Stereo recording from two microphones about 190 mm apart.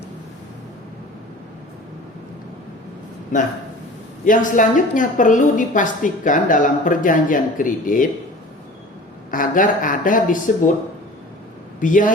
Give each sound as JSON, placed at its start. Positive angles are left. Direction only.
{"t": 4.3, "sound": "a woman's voice", "side_deg": 45}
{"t": 9.3, "sound": "a woman's voice", "side_deg": 45}
{"t": 11.8, "sound": "a woman's voice", "side_deg": 45}